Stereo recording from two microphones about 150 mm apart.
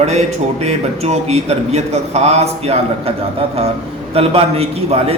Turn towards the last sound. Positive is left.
turn(degrees=-45)  # may be behind; listen again after turning